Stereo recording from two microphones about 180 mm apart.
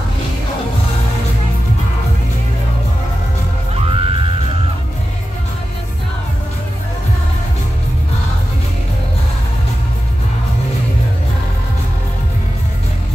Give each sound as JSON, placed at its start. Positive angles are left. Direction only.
{"t": 3.7, "sound": "music", "side_deg": -30}